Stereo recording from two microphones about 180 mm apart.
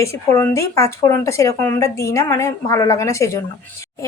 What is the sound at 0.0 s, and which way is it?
Speech, 15° left (ahead or behind).